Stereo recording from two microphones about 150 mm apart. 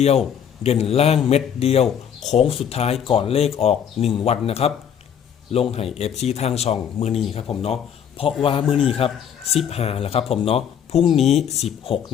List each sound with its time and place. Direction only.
0.6 s a man's voice: 45° left (ahead or behind)